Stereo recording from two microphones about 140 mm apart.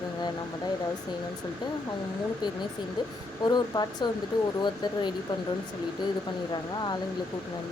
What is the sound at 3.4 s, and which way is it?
Speech, 30° left (ahead or behind).